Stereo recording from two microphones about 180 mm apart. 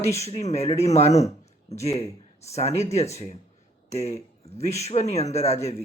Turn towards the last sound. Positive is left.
turn(degrees=35)  # may be behind; listen again after turning